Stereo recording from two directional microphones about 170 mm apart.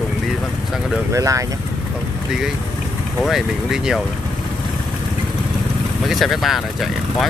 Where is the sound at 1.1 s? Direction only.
20° right (ahead or behind).